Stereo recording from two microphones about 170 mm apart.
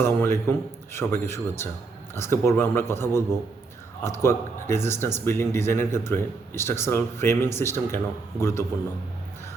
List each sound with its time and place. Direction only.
0.0 s speech: 15° left (ahead or behind)